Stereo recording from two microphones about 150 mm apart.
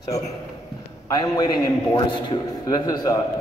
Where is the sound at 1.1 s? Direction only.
25° left (ahead or behind).